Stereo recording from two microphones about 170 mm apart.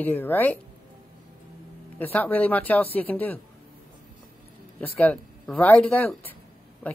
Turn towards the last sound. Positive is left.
turn(degrees=10)  # may be behind; listen again after turning